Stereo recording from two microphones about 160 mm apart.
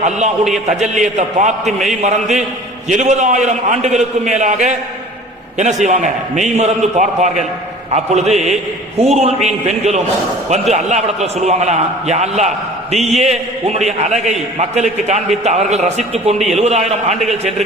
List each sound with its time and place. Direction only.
0.7 s a man's voice: 50° right (ahead or behind)
1.6 s a man's voice: centre (ahead or behind)
2.0 s a man's voice: 45° right (ahead or behind)